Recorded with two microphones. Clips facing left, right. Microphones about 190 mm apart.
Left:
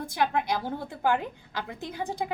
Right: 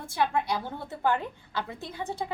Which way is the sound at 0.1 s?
15° left (ahead or behind).